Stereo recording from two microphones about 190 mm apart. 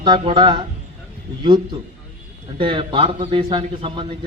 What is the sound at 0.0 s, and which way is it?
Speech, 25° right (ahead or behind).